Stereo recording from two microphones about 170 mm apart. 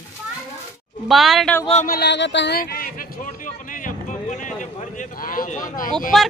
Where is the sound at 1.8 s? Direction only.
70° left (ahead or behind); by 5.9 s 55° left (ahead or behind).